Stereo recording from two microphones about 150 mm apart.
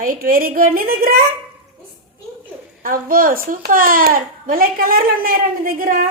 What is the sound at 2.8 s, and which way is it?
A woman's voice, 70° right (ahead or behind).